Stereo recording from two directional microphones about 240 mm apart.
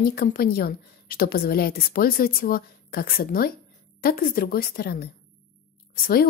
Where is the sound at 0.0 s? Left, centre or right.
Left.